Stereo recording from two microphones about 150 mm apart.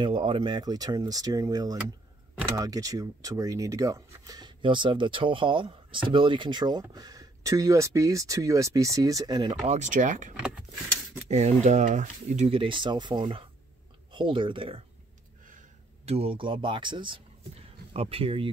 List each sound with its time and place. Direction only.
0.0 s speech: 35° right (ahead or behind)
9.7 s speech: 55° right (ahead or behind)
11.2 s speech: 50° right (ahead or behind)
16.1 s speech: 40° right (ahead or behind)